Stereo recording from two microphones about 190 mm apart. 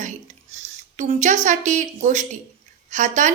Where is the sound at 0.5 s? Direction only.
40° right (ahead or behind).